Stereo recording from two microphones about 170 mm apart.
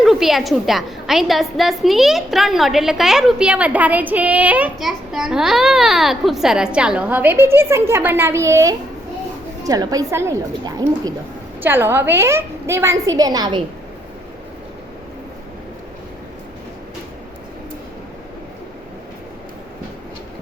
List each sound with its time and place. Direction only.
0.0 s a woman's voice: centre (ahead or behind); by 13.7 s 25° right (ahead or behind)